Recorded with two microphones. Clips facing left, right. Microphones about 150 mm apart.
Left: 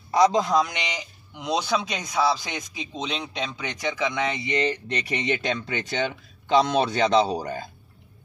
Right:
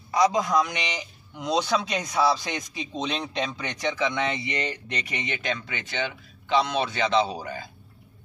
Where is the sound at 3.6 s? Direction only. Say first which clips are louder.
Left 2 dB; 15° left (ahead or behind); by 7.6 s 40° left (ahead or behind).